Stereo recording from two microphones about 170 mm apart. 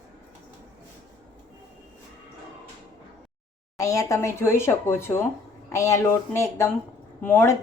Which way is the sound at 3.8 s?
20° left (ahead or behind).